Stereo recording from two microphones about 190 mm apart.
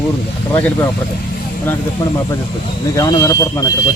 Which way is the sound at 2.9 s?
20° left (ahead or behind).